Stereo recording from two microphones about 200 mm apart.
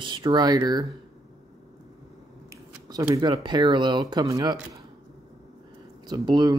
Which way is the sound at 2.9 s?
20° right (ahead or behind).